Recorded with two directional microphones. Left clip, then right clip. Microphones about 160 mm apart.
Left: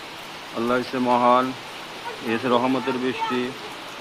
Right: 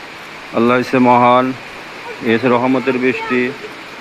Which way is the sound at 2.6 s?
10° right (ahead or behind).